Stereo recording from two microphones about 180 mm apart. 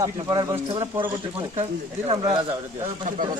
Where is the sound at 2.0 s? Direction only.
25° right (ahead or behind).